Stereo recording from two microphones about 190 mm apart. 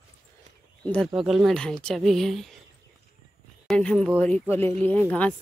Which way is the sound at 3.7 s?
5° left (ahead or behind).